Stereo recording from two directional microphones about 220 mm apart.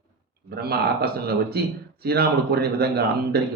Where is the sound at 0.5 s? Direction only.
45° right (ahead or behind).